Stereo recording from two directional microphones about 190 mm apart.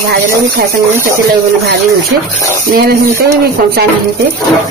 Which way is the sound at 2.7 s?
55° right (ahead or behind).